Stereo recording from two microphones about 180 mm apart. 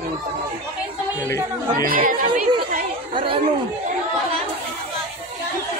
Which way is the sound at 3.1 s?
30° right (ahead or behind).